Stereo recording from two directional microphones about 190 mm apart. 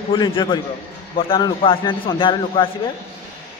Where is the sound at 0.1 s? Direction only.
25° left (ahead or behind).